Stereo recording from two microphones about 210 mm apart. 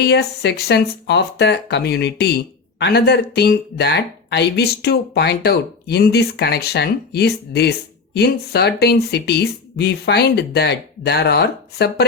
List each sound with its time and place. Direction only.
0.0 s speech: 50° left (ahead or behind)